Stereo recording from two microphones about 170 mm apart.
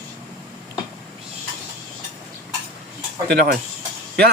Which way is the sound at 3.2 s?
70° right (ahead or behind).